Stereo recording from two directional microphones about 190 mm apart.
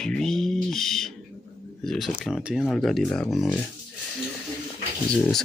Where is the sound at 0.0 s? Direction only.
5° left (ahead or behind).